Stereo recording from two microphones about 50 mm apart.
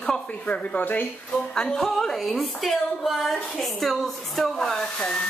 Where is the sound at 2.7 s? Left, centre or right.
Centre.